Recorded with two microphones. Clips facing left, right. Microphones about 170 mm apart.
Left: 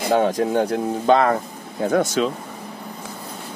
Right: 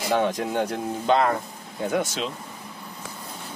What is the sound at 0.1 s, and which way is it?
Speech, 40° left (ahead or behind).